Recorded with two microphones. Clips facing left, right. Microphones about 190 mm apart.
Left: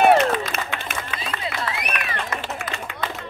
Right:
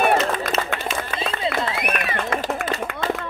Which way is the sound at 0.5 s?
55° left (ahead or behind).